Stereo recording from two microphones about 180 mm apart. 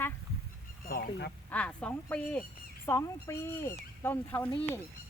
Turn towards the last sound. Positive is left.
turn(degrees=10)  # may be behind; listen again after turning